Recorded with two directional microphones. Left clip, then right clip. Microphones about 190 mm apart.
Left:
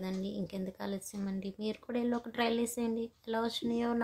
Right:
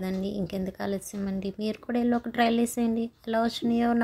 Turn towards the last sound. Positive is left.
turn(degrees=-20)  # may be behind; listen again after turning